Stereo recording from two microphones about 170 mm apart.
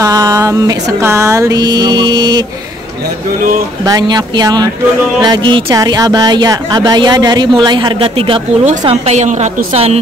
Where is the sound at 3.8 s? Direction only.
20° right (ahead or behind).